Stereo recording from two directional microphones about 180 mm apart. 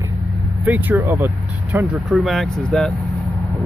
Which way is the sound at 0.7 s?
10° right (ahead or behind).